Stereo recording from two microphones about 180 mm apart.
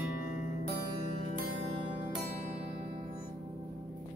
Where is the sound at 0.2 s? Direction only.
50° left (ahead or behind).